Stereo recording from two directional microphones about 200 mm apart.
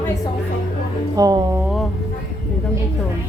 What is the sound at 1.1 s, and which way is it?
Speech, 20° right (ahead or behind).